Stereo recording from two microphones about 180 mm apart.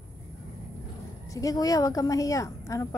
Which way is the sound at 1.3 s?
20° left (ahead or behind).